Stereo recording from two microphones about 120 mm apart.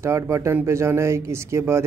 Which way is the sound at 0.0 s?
25° right (ahead or behind).